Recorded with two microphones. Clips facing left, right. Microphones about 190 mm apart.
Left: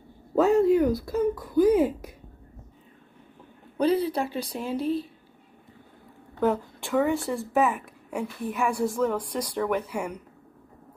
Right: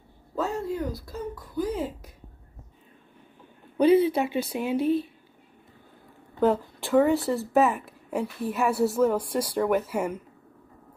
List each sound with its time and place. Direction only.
0.4 s a sound: 70° left (ahead or behind)
3.7 s a woman's voice: 5° right (ahead or behind)
6.8 s a woman's voice: centre (ahead or behind)